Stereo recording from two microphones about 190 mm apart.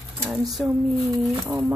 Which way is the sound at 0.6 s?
Centre (ahead or behind).